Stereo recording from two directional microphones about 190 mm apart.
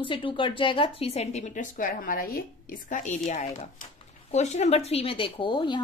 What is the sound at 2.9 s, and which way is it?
A woman's voice, 40° left (ahead or behind).